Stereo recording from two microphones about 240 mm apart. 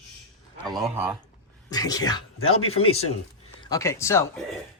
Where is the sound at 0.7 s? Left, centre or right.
Centre.